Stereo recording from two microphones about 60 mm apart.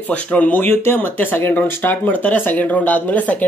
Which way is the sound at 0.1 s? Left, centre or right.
Left.